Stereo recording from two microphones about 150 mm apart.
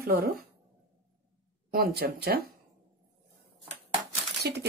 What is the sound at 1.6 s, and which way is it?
Speech, 85° right.